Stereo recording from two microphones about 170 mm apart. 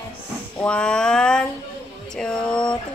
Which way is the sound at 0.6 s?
5° left (ahead or behind).